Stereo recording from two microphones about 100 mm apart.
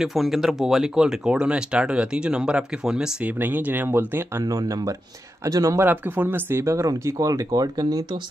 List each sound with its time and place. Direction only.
0.0 s speech: centre (ahead or behind); by 4.5 s 20° right (ahead or behind)
4.5 s speech: 40° right (ahead or behind)
5.9 s speech: 20° right (ahead or behind); by 8.2 s 45° right (ahead or behind)